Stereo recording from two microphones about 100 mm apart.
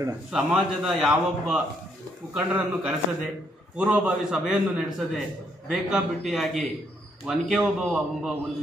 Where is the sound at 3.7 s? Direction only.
10° right (ahead or behind).